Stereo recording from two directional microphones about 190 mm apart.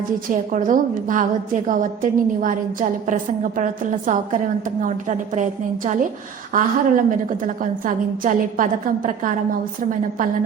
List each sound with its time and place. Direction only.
0.3 s a woman's voice: 45° right (ahead or behind)